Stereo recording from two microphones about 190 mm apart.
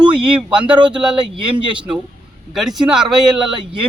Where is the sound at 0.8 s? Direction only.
5° right (ahead or behind).